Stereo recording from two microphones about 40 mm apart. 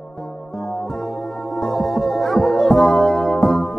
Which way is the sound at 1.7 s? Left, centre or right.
Centre.